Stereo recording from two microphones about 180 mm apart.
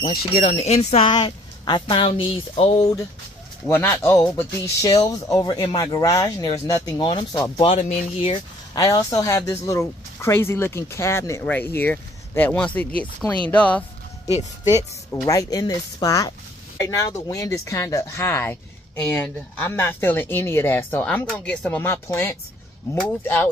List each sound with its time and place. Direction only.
0.2 s speech: 35° left (ahead or behind)
3.6 s a man's voice: 10° left (ahead or behind)
7.6 s speech: 40° left (ahead or behind)
8.7 s speech: 20° left (ahead or behind)
15.2 s a man's voice: 20° left (ahead or behind)